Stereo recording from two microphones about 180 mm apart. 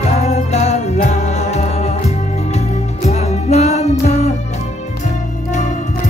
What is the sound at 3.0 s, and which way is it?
Music, 35° left (ahead or behind).